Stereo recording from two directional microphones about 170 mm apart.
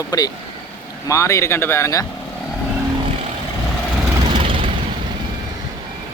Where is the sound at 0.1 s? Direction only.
25° left (ahead or behind).